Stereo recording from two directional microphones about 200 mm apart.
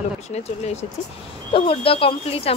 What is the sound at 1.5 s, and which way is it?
Speech, 25° left (ahead or behind).